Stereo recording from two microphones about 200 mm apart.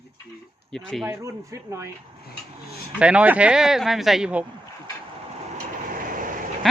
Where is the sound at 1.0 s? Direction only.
15° right (ahead or behind).